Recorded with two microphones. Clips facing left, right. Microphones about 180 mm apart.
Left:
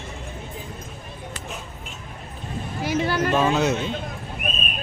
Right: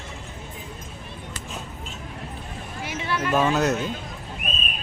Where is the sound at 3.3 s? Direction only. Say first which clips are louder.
Right 2 dB; centre (ahead or behind).